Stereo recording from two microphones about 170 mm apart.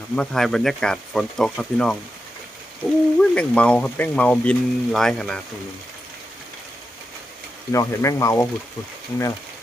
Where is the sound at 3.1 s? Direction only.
5° left (ahead or behind).